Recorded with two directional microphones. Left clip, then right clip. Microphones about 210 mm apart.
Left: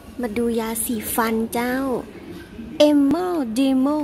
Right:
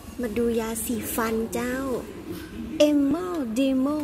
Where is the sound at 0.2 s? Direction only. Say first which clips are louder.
Left 2 dB; 20° left (ahead or behind).